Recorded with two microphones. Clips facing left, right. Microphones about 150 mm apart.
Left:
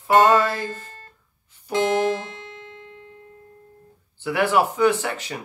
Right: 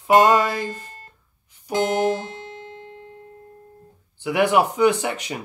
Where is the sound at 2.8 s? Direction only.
40° right (ahead or behind).